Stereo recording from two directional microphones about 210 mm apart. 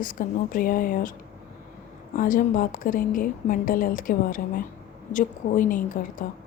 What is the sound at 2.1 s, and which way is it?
A woman's voice, 40° left (ahead or behind).